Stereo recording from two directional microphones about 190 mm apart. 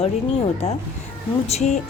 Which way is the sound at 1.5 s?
35° left (ahead or behind).